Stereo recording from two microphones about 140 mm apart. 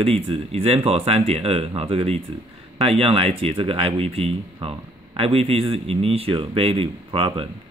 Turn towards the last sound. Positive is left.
turn(degrees=-40)  # may be behind; listen again after turning